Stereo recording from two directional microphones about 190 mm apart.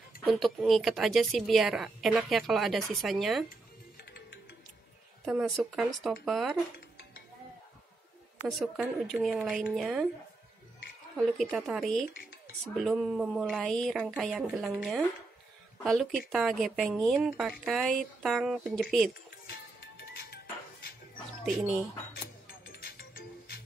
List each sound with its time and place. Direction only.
0.2 s a woman's voice: centre (ahead or behind)
4.0 s music: 60° left (ahead or behind)
5.2 s a woman's voice: 5° right (ahead or behind)
8.5 s a woman's voice: centre (ahead or behind)
11.1 s a woman's voice: centre (ahead or behind)
19.3 s music: 60° left (ahead or behind)
22.7 s music: 55° left (ahead or behind)